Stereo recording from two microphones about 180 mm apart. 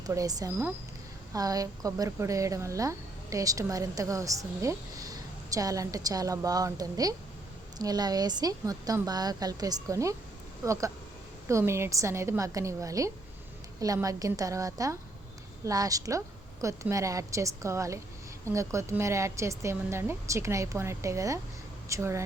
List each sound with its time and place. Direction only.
0.0 s a woman's voice: 20° right (ahead or behind)